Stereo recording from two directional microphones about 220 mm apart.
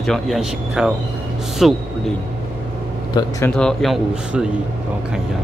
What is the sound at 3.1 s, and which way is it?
Speech, 15° left (ahead or behind).